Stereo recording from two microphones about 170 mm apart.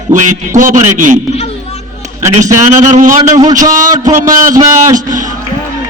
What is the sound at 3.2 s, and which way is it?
Speech, 25° right (ahead or behind).